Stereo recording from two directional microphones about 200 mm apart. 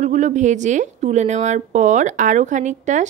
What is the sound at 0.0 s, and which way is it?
A woman's voice, 35° right (ahead or behind).